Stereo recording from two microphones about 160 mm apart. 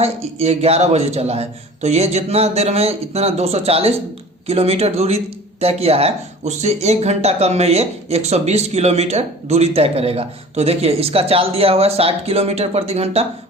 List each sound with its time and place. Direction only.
0.0 s speech: 40° right (ahead or behind)